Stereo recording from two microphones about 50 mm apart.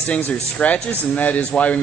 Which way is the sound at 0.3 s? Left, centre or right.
Left.